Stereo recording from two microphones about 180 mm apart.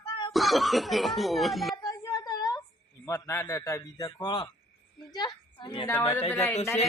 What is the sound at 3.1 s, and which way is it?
A man's voice, 15° left (ahead or behind).